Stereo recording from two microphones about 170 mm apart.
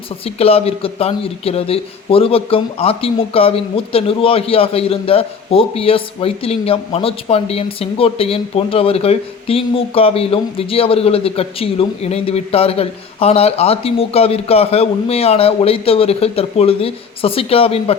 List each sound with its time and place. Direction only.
0.3 s speech: 35° left (ahead or behind)